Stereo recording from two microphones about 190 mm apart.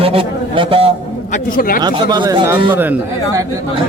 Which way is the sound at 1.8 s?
20° right (ahead or behind).